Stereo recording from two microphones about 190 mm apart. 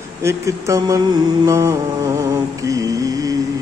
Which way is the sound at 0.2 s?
15° right (ahead or behind).